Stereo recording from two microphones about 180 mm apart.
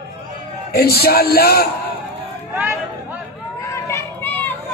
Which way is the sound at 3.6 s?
15° left (ahead or behind).